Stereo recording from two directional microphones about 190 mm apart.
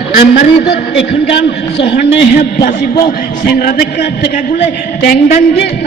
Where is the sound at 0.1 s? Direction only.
55° left (ahead or behind).